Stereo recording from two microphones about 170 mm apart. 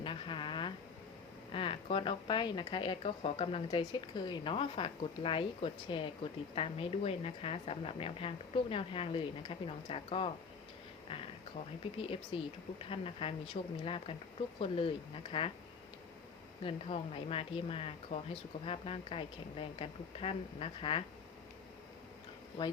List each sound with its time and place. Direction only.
0.0 s a sound: 30° left (ahead or behind)
1.5 s speech: 30° left (ahead or behind)
16.6 s speech: 35° left (ahead or behind)
22.6 s speech: 25° left (ahead or behind)